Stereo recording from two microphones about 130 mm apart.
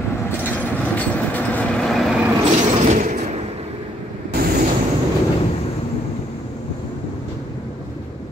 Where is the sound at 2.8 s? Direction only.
65° right (ahead or behind).